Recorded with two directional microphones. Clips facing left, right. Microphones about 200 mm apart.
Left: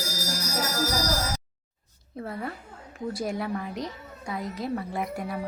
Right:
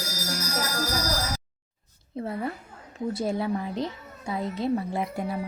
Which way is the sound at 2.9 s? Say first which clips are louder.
Right 3 dB; 25° right (ahead or behind).